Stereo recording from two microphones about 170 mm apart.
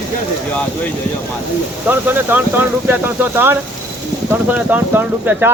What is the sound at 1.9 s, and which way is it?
Speech, 10° right (ahead or behind).